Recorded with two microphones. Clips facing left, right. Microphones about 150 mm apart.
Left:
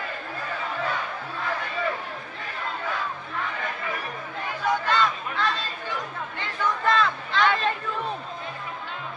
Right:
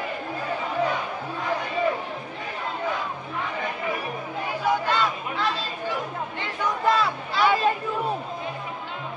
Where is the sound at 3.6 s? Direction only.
15° right (ahead or behind).